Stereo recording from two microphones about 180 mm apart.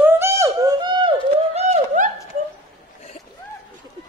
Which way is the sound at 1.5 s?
35° right (ahead or behind).